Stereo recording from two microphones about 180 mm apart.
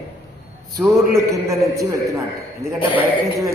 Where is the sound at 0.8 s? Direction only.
15° right (ahead or behind).